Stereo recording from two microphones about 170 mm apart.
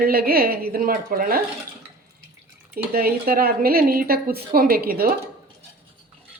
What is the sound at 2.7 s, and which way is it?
Speech, 60° right (ahead or behind).